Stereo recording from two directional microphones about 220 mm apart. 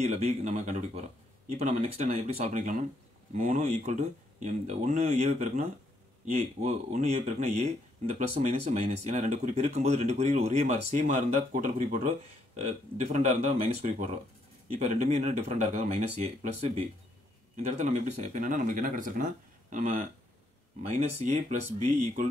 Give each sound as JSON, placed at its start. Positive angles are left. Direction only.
{"t": 0.0, "sound": "speech", "side_deg": -30}